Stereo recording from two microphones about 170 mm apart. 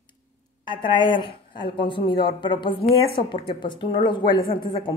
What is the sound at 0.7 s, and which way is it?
A woman's voice, 30° left (ahead or behind).